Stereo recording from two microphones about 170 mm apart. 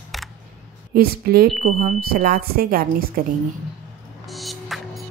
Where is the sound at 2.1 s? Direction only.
60° right (ahead or behind).